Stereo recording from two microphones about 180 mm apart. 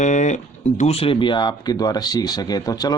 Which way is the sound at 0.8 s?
35° left (ahead or behind).